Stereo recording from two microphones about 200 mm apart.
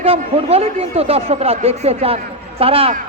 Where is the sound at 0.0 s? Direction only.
30° right (ahead or behind).